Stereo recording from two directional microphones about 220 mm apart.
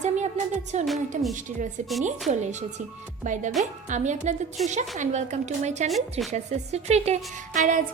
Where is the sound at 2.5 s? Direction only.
30° right (ahead or behind).